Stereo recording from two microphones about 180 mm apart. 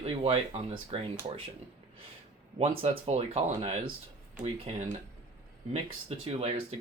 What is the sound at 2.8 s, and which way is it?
Speech, 35° right (ahead or behind).